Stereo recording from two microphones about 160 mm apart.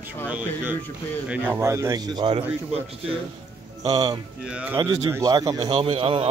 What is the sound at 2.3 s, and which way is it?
Speech, 40° right (ahead or behind).